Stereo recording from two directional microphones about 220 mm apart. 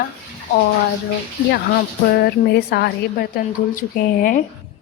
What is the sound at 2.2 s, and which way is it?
A woman's voice, 45° left (ahead or behind).